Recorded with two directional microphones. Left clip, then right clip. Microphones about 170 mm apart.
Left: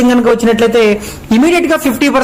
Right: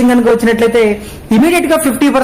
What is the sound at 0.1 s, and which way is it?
Speech, 5° right (ahead or behind).